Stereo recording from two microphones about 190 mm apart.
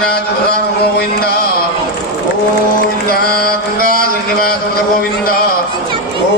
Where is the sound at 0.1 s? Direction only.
55° left (ahead or behind).